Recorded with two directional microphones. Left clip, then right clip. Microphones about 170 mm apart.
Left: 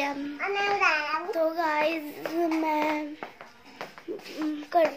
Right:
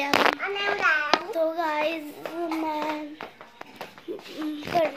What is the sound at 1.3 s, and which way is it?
Child singing, 5° left (ahead or behind).